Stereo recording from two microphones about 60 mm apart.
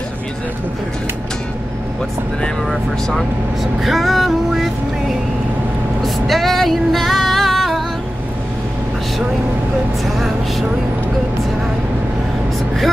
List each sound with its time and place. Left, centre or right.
2.7 s music: centre
6.0 s music: centre
10.1 s vehicle: centre